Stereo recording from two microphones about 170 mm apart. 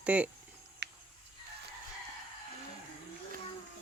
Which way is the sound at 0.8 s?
80° right.